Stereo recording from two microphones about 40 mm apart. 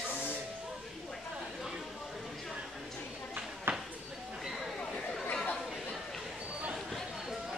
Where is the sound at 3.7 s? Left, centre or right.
Right.